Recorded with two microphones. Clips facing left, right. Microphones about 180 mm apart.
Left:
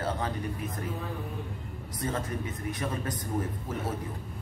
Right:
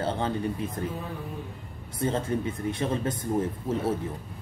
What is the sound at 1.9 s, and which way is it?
A man's voice, 30° right (ahead or behind).